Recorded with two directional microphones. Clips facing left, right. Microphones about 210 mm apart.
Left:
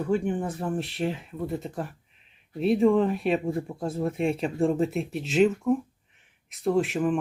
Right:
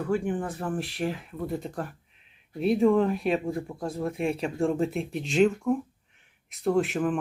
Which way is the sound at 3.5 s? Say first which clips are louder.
Left 2 dB; 20° left (ahead or behind).